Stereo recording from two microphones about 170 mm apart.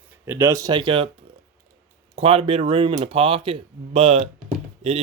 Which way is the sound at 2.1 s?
35° right (ahead or behind).